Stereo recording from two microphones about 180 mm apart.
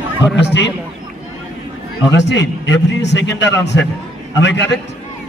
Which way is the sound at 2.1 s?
75° left (ahead or behind).